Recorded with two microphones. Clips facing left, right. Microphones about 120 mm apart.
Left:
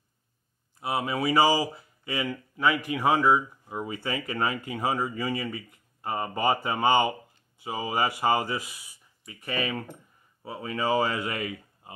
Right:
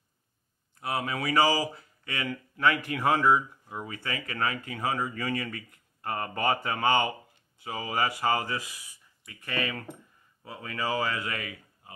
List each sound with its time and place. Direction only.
0.7 s speech: 15° left (ahead or behind)